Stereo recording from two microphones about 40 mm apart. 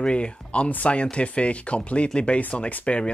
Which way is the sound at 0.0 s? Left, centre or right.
Left.